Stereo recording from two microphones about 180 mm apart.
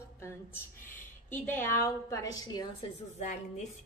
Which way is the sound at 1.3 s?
10° left (ahead or behind).